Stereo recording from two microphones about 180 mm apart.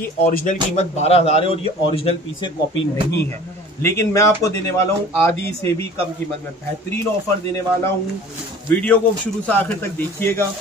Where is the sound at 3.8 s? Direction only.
15° left (ahead or behind).